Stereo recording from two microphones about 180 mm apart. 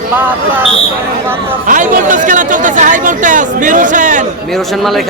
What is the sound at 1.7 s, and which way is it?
Speech, 45° right (ahead or behind).